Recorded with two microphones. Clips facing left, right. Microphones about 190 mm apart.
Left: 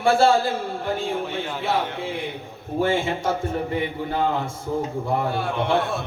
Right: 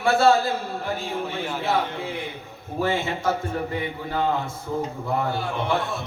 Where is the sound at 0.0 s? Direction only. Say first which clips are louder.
Left 3 dB; 30° left (ahead or behind).